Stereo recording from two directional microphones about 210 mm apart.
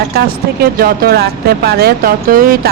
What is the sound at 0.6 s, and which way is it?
Speech, 45° right (ahead or behind).